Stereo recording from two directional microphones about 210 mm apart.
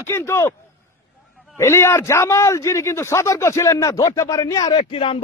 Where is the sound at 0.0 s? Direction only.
10° left (ahead or behind).